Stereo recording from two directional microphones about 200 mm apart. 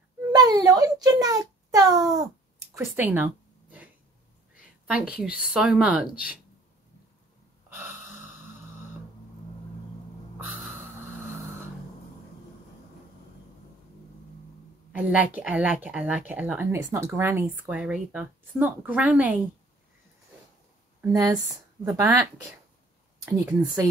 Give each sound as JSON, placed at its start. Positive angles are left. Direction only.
{"t": 0.3, "sound": "a child's voice", "side_deg": -20}
{"t": 4.8, "sound": "a woman's voice", "side_deg": -5}
{"t": 7.7, "sound": "gasp", "side_deg": -10}
{"t": 14.9, "sound": "speech", "side_deg": -5}
{"t": 21.0, "sound": "speech", "side_deg": -15}